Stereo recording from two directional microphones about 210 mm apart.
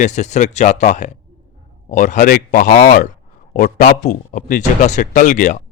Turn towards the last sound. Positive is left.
turn(degrees=35)  # may be behind; listen again after turning